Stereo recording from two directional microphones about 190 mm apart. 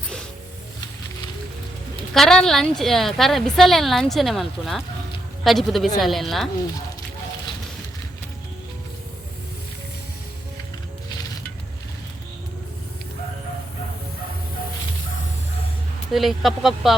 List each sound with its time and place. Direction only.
2.1 s a woman's voice: centre (ahead or behind)
16.1 s a woman's voice: centre (ahead or behind)